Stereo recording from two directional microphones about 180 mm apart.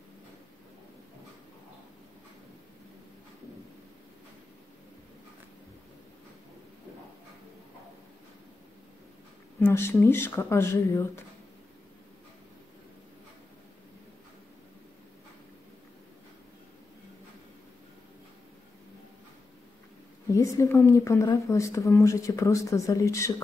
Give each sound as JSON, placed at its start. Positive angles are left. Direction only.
{"t": 9.6, "sound": "a woman's voice", "side_deg": 15}
{"t": 20.3, "sound": "a woman's voice", "side_deg": 15}